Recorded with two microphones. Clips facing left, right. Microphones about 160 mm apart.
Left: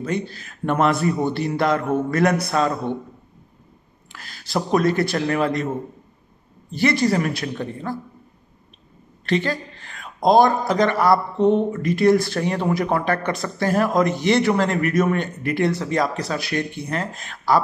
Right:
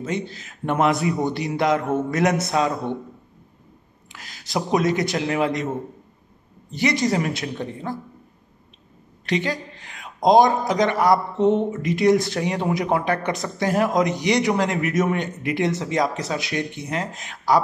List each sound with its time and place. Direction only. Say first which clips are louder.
0.0 s a man's voice: left 2 dB; 20° right (ahead or behind)
4.1 s speech: left 2 dB; 20° right (ahead or behind)
6.7 s a man's voice: left 2 dB; 20° right (ahead or behind)
9.2 s speech: left 2 dB; 15° right (ahead or behind)